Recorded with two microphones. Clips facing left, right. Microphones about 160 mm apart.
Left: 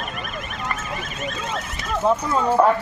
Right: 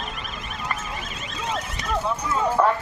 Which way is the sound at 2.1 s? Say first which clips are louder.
Left 13 dB; 40° left (ahead or behind).